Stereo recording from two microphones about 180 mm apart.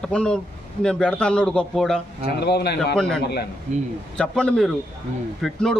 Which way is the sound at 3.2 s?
60° left (ahead or behind).